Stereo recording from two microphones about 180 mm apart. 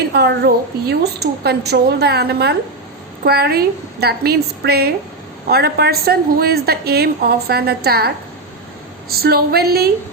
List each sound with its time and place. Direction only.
0.1 s a woman's voice: 65° right (ahead or behind)
9.2 s a woman's voice: 60° right (ahead or behind)